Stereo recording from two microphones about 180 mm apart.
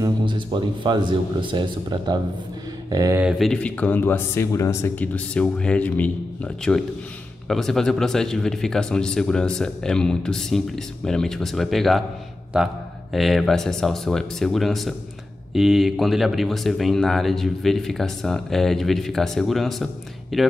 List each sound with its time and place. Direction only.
0.0 s speech: 25° right (ahead or behind)
3.2 s speech: centre (ahead or behind)
13.1 s speech: centre (ahead or behind)